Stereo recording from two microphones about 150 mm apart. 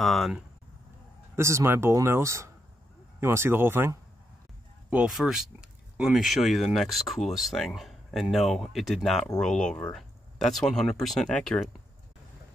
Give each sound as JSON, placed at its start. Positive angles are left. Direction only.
{"t": 0.0, "sound": "speech", "side_deg": 0}
{"t": 1.3, "sound": "speech", "side_deg": -20}